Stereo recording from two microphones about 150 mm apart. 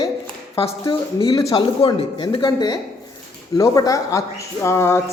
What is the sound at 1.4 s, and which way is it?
Speech, 25° left (ahead or behind).